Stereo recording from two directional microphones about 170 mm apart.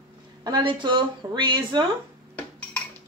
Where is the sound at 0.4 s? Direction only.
25° right (ahead or behind).